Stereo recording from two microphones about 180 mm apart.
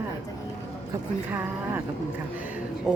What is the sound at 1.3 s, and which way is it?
Speech, 10° right (ahead or behind).